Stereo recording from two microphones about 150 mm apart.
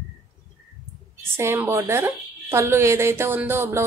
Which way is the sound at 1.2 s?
15° right (ahead or behind).